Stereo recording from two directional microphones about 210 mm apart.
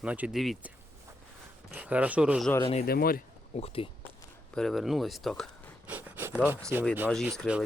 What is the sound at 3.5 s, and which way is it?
Speech, 30° left (ahead or behind).